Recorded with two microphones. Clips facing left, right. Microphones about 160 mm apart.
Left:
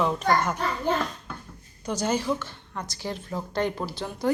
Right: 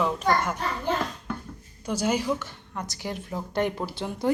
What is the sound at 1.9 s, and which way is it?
A woman's voice, 10° right (ahead or behind).